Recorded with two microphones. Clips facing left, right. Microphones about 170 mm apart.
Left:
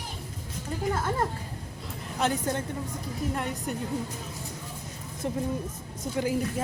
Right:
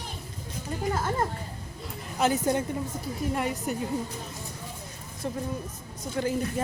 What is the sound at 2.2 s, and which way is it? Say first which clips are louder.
A woman's voice: right 3 dB; 5° right (ahead or behind).